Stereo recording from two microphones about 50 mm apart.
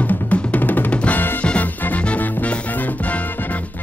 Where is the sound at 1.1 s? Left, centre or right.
Left.